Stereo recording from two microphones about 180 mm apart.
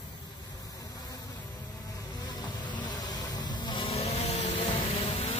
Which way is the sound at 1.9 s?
20° left (ahead or behind).